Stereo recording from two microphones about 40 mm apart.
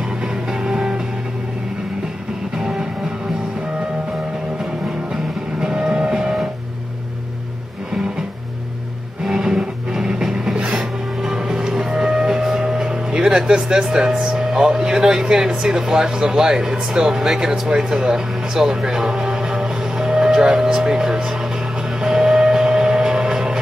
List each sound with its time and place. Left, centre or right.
0.2 s music: centre
2.5 s music: centre
5.1 s music: centre
9.2 s music: centre
13.4 s speech: centre
22.0 s music: centre